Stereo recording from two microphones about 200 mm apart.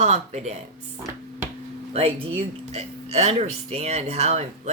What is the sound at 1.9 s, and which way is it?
Speech, 30° right (ahead or behind).